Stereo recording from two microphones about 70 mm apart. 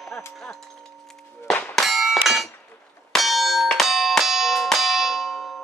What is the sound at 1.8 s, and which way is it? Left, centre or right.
Clang, centre.